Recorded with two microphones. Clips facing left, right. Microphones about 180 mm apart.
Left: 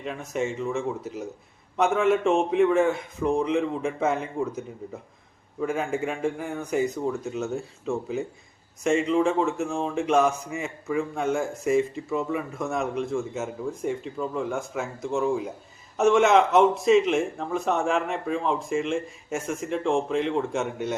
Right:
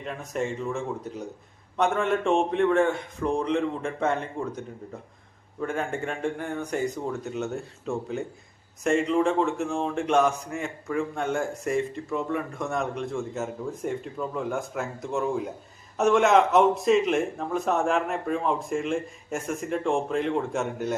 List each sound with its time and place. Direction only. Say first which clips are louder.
0.0 s a man's voice: left 1 dB; centre (ahead or behind)